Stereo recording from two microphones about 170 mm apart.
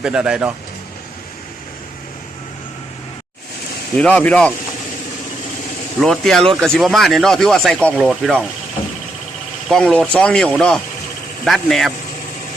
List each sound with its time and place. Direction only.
0.0 s speech: 5° right (ahead or behind)
3.9 s speech: 5° left (ahead or behind)
6.0 s speech: centre (ahead or behind)
9.6 s speech: 5° left (ahead or behind)